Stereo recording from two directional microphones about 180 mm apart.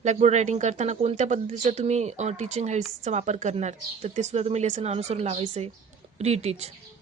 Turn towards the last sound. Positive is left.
turn(degrees=-35)  # may be behind; listen again after turning